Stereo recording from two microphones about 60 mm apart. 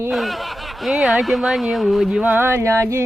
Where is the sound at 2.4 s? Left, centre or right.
Right.